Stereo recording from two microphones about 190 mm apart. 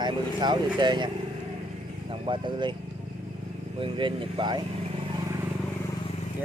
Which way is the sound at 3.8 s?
25° right (ahead or behind).